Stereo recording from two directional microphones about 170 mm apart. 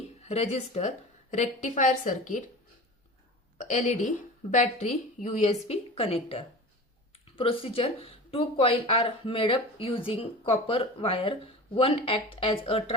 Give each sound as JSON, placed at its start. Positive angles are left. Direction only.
{"t": 0.2, "sound": "a woman's voice", "side_deg": 40}
{"t": 3.6, "sound": "a woman's voice", "side_deg": 45}